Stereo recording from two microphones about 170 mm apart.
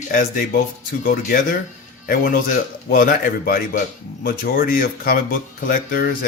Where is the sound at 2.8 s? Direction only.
55° left (ahead or behind).